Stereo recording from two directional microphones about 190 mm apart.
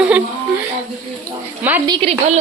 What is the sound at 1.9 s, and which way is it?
Speech, 30° right (ahead or behind).